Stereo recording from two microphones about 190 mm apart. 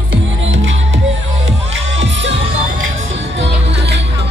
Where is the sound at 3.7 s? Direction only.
65° right (ahead or behind).